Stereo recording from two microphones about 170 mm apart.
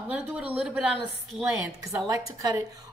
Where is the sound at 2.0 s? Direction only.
20° right (ahead or behind).